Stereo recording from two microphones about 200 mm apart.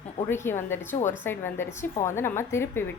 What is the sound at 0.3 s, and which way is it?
A woman's voice, 10° left (ahead or behind).